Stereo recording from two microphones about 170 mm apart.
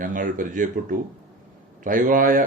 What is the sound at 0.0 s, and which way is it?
A man's voice, 50° right (ahead or behind).